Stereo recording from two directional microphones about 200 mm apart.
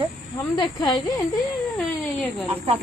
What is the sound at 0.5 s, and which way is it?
Speech, 20° left (ahead or behind).